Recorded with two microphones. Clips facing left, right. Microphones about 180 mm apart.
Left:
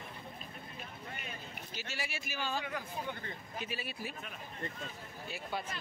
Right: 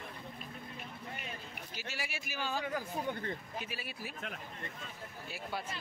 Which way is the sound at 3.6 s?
5° right (ahead or behind).